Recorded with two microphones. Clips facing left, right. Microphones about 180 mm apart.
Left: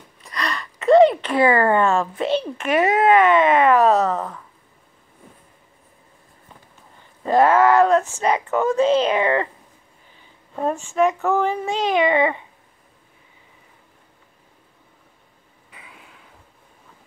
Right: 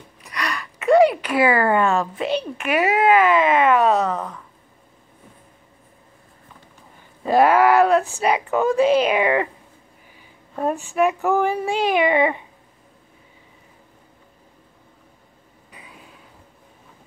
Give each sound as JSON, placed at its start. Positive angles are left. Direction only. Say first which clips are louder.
{"t": 0.4, "sound": "speech", "louder": "even", "side_deg": -5}
{"t": 7.2, "sound": "a woman's voice", "louder": "even", "side_deg": -10}
{"t": 11.0, "sound": "a woman's voice", "louder": "even", "side_deg": -15}
{"t": 15.7, "sound": "a sound", "louder": "right 2 dB", "side_deg": -30}